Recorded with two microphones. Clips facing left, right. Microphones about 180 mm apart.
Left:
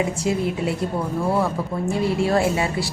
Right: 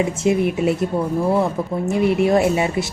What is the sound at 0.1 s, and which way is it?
Speech, 20° right (ahead or behind).